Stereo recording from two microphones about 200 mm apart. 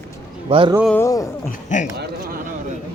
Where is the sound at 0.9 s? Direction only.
15° left (ahead or behind).